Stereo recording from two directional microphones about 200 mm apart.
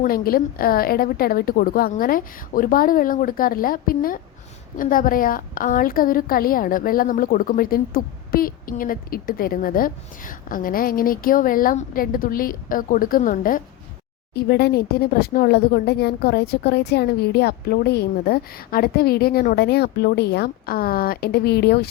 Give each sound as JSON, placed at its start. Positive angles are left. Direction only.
{"t": 0.0, "sound": "a woman's voice", "side_deg": 45}